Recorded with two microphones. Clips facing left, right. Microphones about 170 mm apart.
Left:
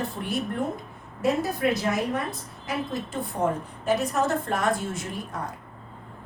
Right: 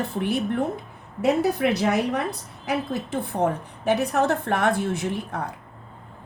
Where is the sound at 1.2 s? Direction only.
70° right (ahead or behind).